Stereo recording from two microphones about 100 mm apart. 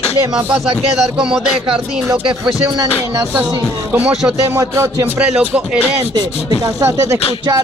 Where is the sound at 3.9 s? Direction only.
10° right (ahead or behind).